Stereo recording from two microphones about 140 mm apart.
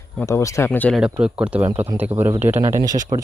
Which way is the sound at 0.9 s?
5° right (ahead or behind).